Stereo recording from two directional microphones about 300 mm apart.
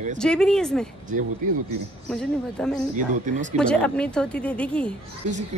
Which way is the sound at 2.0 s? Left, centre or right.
Centre.